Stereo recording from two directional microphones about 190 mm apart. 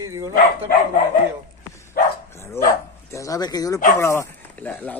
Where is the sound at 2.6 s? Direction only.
15° left (ahead or behind).